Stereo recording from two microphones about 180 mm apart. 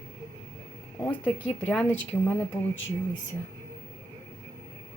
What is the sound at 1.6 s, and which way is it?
Speech, 10° left (ahead or behind).